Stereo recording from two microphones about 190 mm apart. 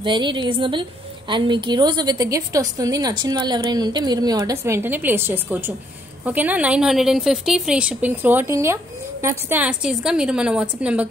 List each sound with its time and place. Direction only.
0.0 s a woman's voice: 25° right (ahead or behind); by 11.1 s 5° right (ahead or behind)